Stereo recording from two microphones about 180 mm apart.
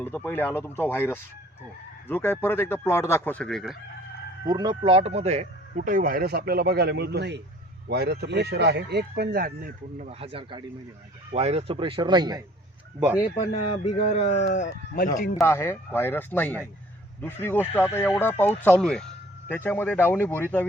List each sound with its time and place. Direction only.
0.0 s speech: 10° left (ahead or behind)
4.4 s speech: 25° right (ahead or behind)
13.0 s speech: 10° right (ahead or behind)
13.8 s speech: 40° left (ahead or behind)
15.4 s speech: 15° left (ahead or behind)